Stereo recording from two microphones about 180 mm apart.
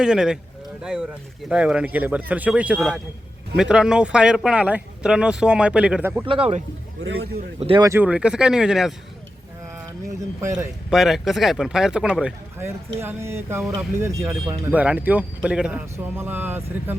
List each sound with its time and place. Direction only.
0.0 s speech: 5° right (ahead or behind)
6.2 s speech: 30° right (ahead or behind)
7.0 s a man's voice: 70° right (ahead or behind)
7.6 s speech: 30° right (ahead or behind)
7.9 s speech: 10° right (ahead or behind)
10.4 s speech: 15° right (ahead or behind)
10.8 s speech: centre (ahead or behind)